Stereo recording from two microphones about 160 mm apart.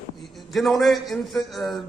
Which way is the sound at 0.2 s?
Centre (ahead or behind).